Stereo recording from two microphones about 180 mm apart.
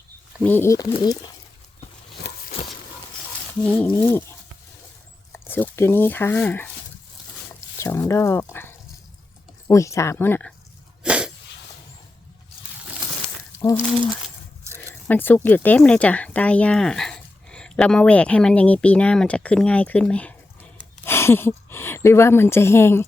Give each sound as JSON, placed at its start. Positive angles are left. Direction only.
{"t": 0.4, "sound": "speech", "side_deg": 10}
{"t": 2.3, "sound": "a sound", "side_deg": 65}
{"t": 3.6, "sound": "speech", "side_deg": 10}
{"t": 7.8, "sound": "speech", "side_deg": 15}
{"t": 11.0, "sound": "sneeze", "side_deg": -5}
{"t": 15.0, "sound": "speech", "side_deg": 10}